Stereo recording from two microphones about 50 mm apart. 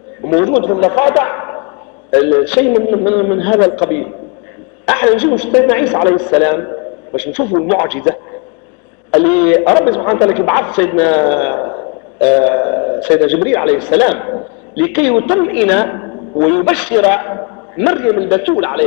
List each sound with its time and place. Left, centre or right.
0.2 s a woman's voice: centre